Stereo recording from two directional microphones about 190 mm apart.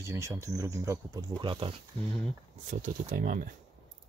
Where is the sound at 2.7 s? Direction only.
45° right (ahead or behind).